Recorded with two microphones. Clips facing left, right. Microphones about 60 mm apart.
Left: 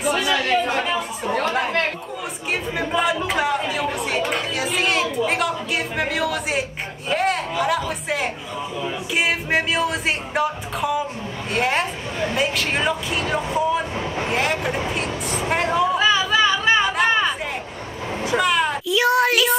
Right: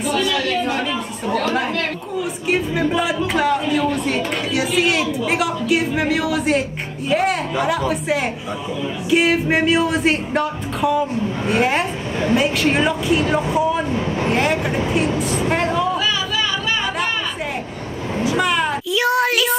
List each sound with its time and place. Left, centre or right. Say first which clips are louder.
0.3 s speech: even; left
2.5 s speech: right 4 dB; centre
16.0 s a sound: left 4 dB; left
18.3 s speech: left 1 dB; centre